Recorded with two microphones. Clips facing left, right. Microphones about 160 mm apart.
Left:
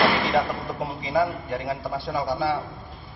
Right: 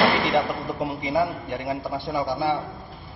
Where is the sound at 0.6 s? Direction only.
15° right (ahead or behind).